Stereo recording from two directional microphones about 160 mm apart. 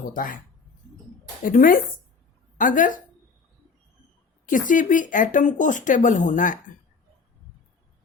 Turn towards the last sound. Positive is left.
turn(degrees=55)  # may be behind; listen again after turning